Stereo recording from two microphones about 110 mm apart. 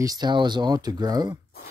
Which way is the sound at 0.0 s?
35° right (ahead or behind).